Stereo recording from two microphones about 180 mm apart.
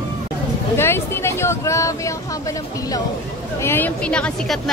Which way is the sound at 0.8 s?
15° left (ahead or behind).